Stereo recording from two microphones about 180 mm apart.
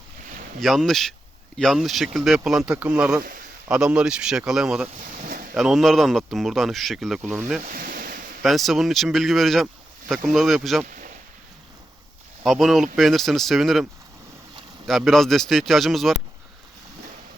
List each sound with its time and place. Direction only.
0.6 s speech: centre (ahead or behind)
7.6 s ocean: 50° right (ahead or behind)
8.4 s speech: centre (ahead or behind)
12.4 s speech: centre (ahead or behind)
14.8 s speech: centre (ahead or behind)